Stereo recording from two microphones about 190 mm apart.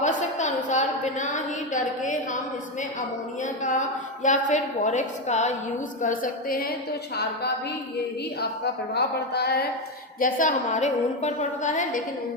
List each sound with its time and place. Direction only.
0.0 s a sound: 40° left (ahead or behind)
3.4 s a woman's voice: 40° left (ahead or behind)
8.4 s a woman's voice: 60° left (ahead or behind)
10.2 s a woman's voice: 45° left (ahead or behind)